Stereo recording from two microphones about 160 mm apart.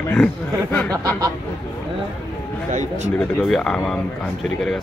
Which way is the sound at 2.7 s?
45° right (ahead or behind).